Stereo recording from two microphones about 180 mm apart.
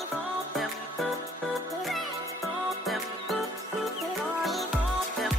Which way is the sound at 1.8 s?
Centre (ahead or behind).